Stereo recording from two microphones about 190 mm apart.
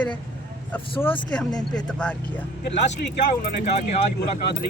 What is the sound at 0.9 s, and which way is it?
Speech, 30° left (ahead or behind).